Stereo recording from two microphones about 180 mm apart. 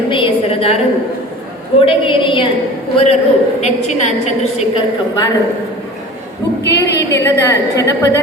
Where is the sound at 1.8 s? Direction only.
30° left (ahead or behind).